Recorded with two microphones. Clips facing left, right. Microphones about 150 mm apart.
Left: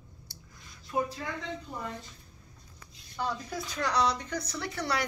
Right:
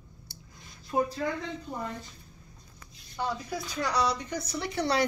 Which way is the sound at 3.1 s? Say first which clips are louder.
Right 1 dB; 10° right (ahead or behind).